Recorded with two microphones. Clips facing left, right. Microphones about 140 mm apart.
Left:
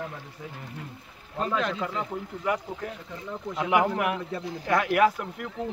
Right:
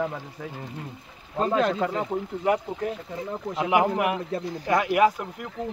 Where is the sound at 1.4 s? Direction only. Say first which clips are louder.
Right 5 dB; 35° right (ahead or behind).